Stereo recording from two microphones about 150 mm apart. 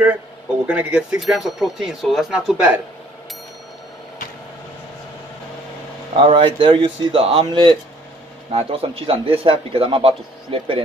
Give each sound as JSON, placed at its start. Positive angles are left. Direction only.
{"t": 0.7, "sound": "speech", "side_deg": -10}
{"t": 6.1, "sound": "speech", "side_deg": -35}
{"t": 7.4, "sound": "speech", "side_deg": -30}